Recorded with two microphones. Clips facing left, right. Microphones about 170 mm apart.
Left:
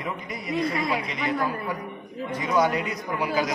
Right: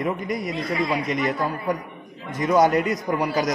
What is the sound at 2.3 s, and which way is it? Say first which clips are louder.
A man's voice: right 5 dB; 45° right (ahead or behind).